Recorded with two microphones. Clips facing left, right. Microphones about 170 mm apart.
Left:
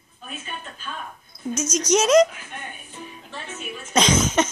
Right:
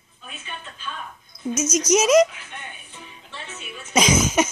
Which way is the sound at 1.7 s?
35° left (ahead or behind).